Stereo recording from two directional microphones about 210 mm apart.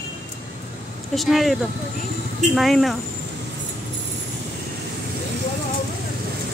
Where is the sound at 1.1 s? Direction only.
Centre (ahead or behind).